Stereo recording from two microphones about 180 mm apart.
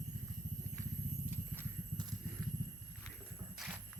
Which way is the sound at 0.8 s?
15° right (ahead or behind).